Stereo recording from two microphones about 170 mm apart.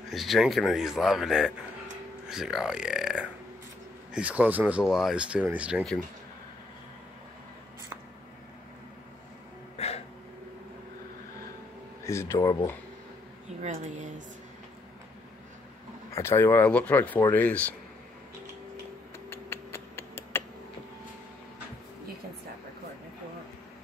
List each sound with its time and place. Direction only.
0.1 s speech: centre (ahead or behind)
9.8 s a sound: 40° left (ahead or behind)
12.0 s speech: 15° left (ahead or behind)
13.5 s speech: 40° right (ahead or behind)
16.1 s speech: 15° left (ahead or behind)
19.2 s a sound: 15° left (ahead or behind)